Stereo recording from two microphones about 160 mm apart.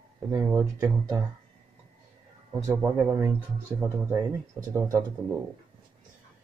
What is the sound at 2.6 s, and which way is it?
Speech, 25° right (ahead or behind).